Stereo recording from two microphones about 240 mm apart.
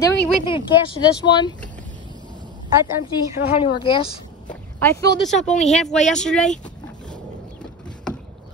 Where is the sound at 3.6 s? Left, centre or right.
Left.